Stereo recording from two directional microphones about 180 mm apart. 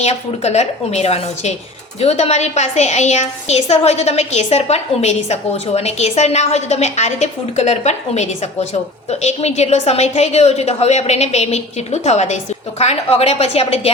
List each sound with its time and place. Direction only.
0.0 s a woman's voice: 35° left (ahead or behind)